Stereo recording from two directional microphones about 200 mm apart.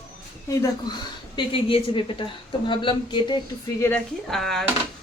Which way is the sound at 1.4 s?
25° left (ahead or behind).